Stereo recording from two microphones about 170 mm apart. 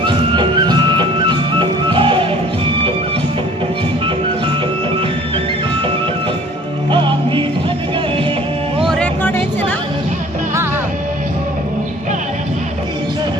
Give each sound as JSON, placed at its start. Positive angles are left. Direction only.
{"t": 0.0, "sound": "music", "side_deg": -25}
{"t": 6.9, "sound": "music", "side_deg": -30}
{"t": 8.8, "sound": "music", "side_deg": 0}